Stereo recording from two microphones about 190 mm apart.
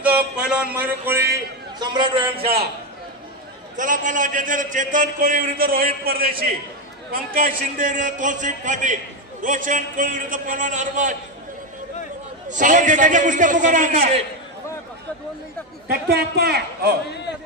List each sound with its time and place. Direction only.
0.0 s a sound: 5° right (ahead or behind)
1.8 s a man's voice: 25° right (ahead or behind)
2.4 s a man's voice: 55° right (ahead or behind)
3.7 s a man's voice: 40° right (ahead or behind)
12.4 s a man's voice: 40° right (ahead or behind)
15.9 s a man's voice: 55° right (ahead or behind)